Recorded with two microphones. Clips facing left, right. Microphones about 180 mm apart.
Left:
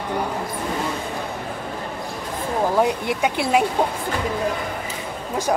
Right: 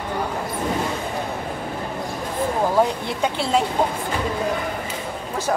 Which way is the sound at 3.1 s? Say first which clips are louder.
Left 2 dB; 10° left (ahead or behind).